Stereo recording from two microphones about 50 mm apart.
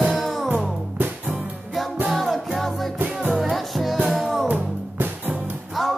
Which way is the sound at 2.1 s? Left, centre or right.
Centre.